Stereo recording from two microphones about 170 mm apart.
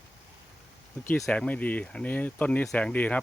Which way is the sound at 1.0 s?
10° left (ahead or behind).